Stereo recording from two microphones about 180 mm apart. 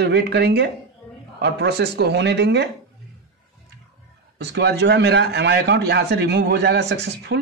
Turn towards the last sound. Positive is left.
turn(degrees=-70)  # may be behind; listen again after turning